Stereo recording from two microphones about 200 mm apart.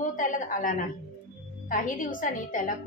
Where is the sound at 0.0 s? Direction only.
40° left (ahead or behind).